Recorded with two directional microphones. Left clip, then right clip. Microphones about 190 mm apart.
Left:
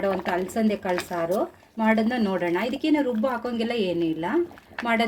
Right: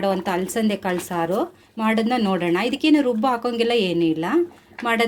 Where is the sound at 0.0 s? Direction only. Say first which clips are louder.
Right 3 dB; 40° right (ahead or behind).